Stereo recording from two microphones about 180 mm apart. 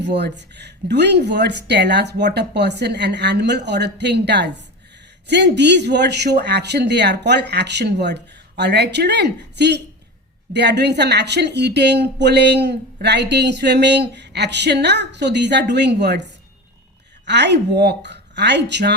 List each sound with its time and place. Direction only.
0.0 s speech: 70° right (ahead or behind)